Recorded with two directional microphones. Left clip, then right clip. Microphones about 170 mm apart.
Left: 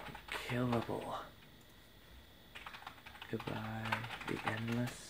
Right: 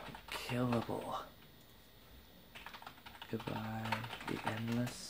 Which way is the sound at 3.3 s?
Centre (ahead or behind).